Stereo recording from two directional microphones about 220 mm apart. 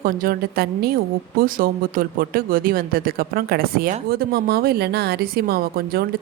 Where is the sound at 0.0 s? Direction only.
40° right (ahead or behind).